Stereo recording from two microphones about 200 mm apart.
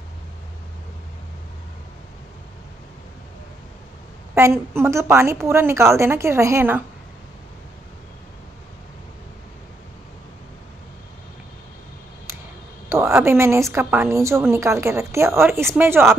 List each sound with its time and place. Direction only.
4.4 s a woman's voice: 10° right (ahead or behind)
12.9 s a woman's voice: 15° right (ahead or behind)